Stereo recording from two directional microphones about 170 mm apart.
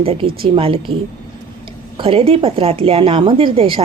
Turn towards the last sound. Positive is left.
turn(degrees=-30)  # may be behind; listen again after turning